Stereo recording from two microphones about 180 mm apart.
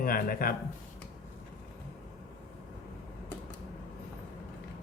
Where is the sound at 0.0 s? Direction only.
50° left (ahead or behind).